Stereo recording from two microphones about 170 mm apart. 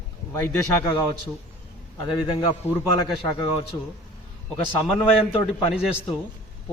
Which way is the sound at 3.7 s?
30° left (ahead or behind).